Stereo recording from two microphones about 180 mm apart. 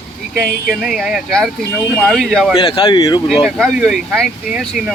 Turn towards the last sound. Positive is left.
turn(degrees=0)  # may be behind; listen again after turning